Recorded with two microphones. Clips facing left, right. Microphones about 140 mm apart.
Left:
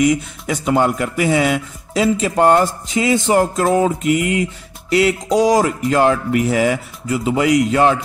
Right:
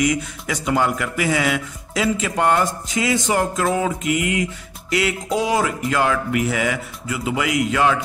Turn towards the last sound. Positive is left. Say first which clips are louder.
# left 5 dB
turn(degrees=35)  # may be behind; listen again after turning